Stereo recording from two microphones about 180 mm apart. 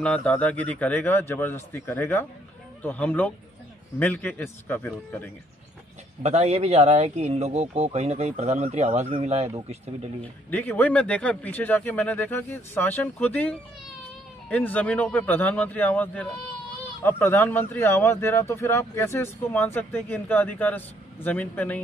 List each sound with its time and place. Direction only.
0.0 s speech: 5° left (ahead or behind)
6.2 s speech: 35° right (ahead or behind)
10.2 s speech: 10° left (ahead or behind)